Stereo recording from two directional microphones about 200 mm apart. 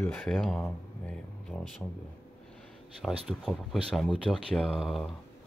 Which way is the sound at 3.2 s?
Centre (ahead or behind).